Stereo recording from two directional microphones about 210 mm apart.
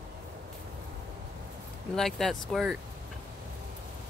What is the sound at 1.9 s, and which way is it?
Speech, centre (ahead or behind).